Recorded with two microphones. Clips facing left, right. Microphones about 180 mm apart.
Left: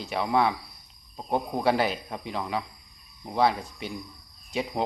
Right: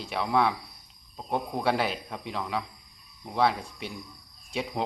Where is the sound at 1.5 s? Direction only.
Centre (ahead or behind).